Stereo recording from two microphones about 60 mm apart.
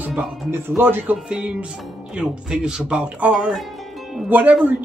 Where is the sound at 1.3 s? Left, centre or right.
Centre.